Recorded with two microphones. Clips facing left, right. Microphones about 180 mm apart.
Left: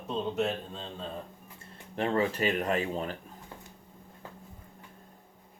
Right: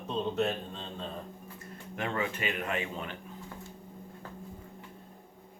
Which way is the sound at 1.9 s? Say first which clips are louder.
Left 5 dB; 35° left (ahead or behind).